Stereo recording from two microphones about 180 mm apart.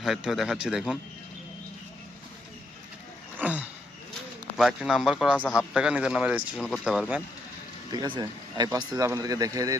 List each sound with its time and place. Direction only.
0.0 s speech: centre (ahead or behind)
3.3 s a sound: 10° right (ahead or behind)
4.5 s speech: 5° right (ahead or behind)
7.9 s speech: 25° right (ahead or behind)